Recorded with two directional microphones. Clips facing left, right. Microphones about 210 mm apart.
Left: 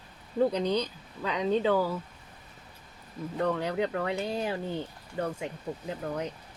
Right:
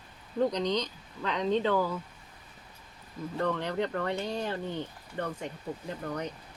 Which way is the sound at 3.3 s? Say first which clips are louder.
Left 2 dB; 10° left (ahead or behind).